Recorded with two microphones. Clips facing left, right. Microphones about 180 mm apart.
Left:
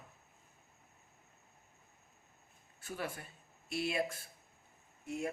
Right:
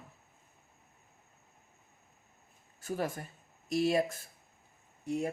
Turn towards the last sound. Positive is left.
turn(degrees=-35)  # may be behind; listen again after turning